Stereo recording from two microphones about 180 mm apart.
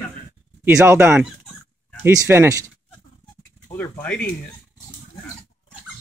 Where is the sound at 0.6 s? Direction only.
15° right (ahead or behind).